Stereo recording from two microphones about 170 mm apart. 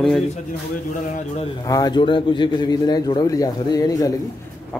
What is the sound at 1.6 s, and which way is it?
A man's voice, 20° left (ahead or behind).